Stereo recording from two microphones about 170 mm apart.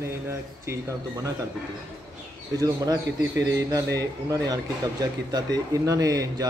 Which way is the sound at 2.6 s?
20° right (ahead or behind).